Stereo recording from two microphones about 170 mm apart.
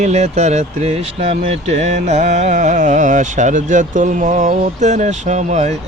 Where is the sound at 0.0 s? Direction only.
40° right (ahead or behind).